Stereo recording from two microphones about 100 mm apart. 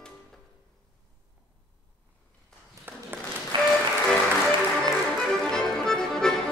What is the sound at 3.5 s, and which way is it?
Music, 55° right (ahead or behind).